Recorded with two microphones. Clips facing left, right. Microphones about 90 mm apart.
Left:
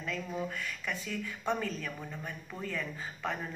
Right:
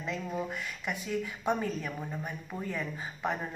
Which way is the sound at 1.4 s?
15° right (ahead or behind).